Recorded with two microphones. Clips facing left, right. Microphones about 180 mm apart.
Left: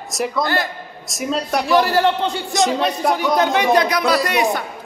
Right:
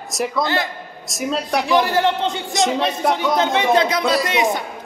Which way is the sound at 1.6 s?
20° right (ahead or behind).